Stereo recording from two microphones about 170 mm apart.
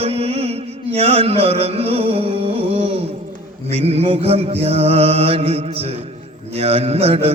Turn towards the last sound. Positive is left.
turn(degrees=-35)  # may be behind; listen again after turning